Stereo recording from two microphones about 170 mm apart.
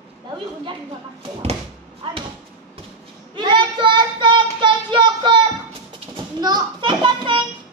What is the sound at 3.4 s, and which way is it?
Child singing, 25° right (ahead or behind).